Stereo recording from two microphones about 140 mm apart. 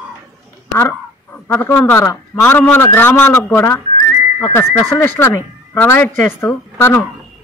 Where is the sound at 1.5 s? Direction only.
15° left (ahead or behind).